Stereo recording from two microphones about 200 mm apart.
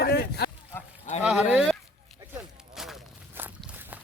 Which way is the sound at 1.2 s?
5° right (ahead or behind).